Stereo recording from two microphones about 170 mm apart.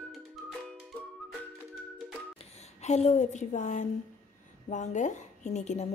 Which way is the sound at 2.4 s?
40° left (ahead or behind).